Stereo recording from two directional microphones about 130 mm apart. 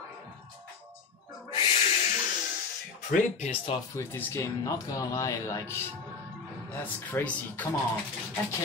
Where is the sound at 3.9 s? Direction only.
20° left (ahead or behind).